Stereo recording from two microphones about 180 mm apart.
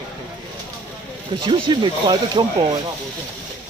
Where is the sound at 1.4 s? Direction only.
25° right (ahead or behind).